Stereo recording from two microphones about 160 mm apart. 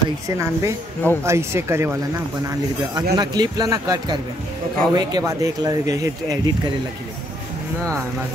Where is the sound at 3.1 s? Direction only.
25° right (ahead or behind).